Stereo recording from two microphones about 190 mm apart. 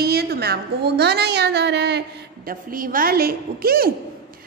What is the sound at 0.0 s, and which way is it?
A woman's voice, 55° right (ahead or behind).